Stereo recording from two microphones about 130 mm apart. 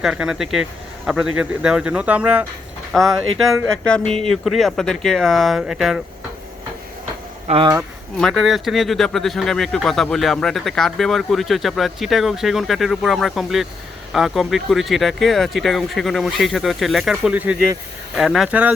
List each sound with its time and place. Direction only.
0.0 s speech: 5° right (ahead or behind)
2.9 s speech: centre (ahead or behind)
7.4 s speech: 45° right (ahead or behind)
8.2 s speech: centre (ahead or behind)